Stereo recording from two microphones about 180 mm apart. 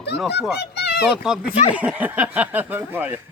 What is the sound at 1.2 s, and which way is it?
Speech, 5° right (ahead or behind).